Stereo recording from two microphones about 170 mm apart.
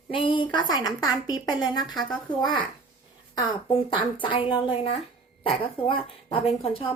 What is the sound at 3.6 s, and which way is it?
A woman's voice, 30° left (ahead or behind).